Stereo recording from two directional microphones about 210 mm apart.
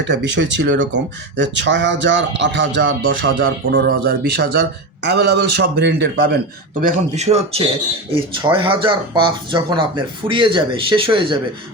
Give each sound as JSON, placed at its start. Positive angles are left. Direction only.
{"t": 0.0, "sound": "speech", "side_deg": -60}
{"t": 3.7, "sound": "a man's voice", "side_deg": -50}
{"t": 6.8, "sound": "a man's voice", "side_deg": -30}